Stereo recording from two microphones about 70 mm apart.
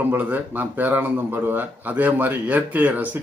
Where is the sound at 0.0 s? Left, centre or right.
Right.